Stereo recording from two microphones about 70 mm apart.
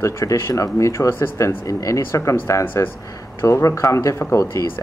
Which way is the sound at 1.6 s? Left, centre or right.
Left.